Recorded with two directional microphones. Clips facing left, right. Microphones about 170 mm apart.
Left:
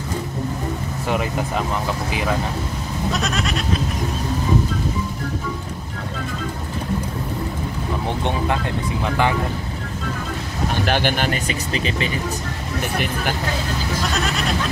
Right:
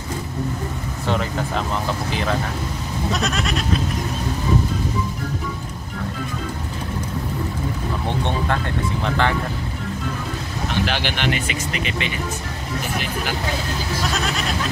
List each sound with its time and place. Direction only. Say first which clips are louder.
3.1 s goat: even; centre (ahead or behind)
8.2 s speech: left 1 dB; 15° left (ahead or behind)
10.7 s speech: left 3 dB; 45° left (ahead or behind)
14.1 s goat: left 1 dB; centre (ahead or behind)